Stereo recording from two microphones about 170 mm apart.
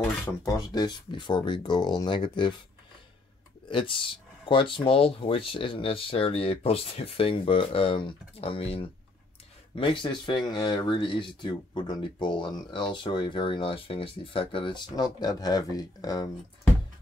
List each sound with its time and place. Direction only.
0.0 s speech: 20° left (ahead or behind)
3.7 s speech: 30° left (ahead or behind)